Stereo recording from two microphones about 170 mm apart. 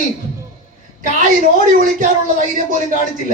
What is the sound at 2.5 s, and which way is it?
Speech, 50° right (ahead or behind).